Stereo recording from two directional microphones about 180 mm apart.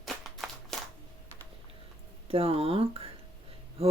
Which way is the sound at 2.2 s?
30° right (ahead or behind).